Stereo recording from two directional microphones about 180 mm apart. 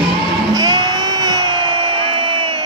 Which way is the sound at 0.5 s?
20° right (ahead or behind).